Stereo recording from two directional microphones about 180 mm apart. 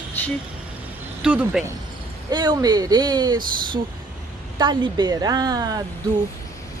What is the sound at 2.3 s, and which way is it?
Speech, 20° right (ahead or behind).